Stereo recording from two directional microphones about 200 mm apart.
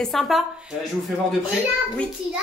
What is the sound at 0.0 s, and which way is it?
Speech, centre (ahead or behind).